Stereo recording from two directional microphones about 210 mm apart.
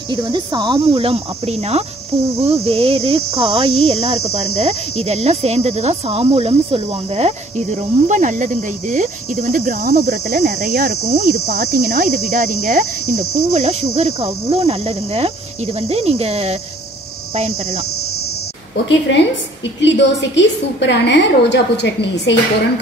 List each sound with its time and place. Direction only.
0.1 s speech: 20° right (ahead or behind)
3.5 s cricket: 30° right (ahead or behind)
13.5 s speech: 30° right (ahead or behind)
18.9 s a woman's voice: 60° left (ahead or behind)